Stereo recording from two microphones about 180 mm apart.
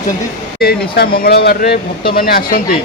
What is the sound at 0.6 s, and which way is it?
Speech, 60° left (ahead or behind).